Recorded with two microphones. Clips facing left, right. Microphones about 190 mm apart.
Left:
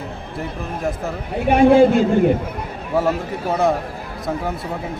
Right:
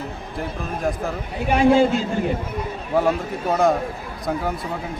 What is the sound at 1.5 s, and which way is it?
Speech, 55° left (ahead or behind).